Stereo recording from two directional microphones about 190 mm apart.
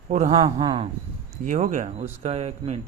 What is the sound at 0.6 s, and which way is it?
Speech, 20° right (ahead or behind).